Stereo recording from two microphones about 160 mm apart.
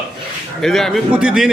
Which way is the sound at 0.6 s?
Centre (ahead or behind).